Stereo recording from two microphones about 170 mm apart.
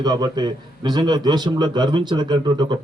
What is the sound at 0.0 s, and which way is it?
A man's voice, 25° right (ahead or behind).